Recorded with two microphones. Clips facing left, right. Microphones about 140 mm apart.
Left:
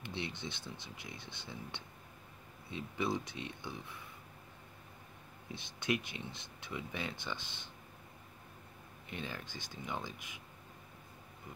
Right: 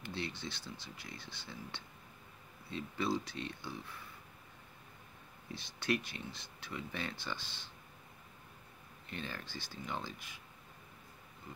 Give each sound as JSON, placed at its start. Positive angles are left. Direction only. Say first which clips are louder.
{"t": 0.0, "sound": "speech", "louder": "even", "side_deg": 20}
{"t": 5.5, "sound": "speech", "louder": "even", "side_deg": 20}
{"t": 9.1, "sound": "speech", "louder": "even", "side_deg": 15}